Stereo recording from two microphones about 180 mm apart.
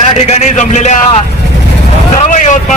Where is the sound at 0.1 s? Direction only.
35° left (ahead or behind).